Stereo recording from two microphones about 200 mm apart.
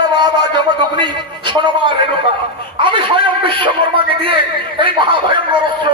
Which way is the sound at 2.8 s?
25° right (ahead or behind).